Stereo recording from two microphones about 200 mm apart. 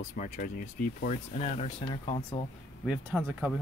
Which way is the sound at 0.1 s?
45° left (ahead or behind).